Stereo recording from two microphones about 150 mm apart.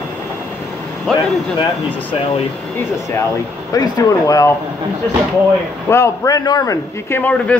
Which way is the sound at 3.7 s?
25° left (ahead or behind).